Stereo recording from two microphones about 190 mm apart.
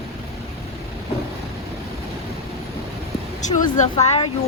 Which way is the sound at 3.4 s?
40° left (ahead or behind).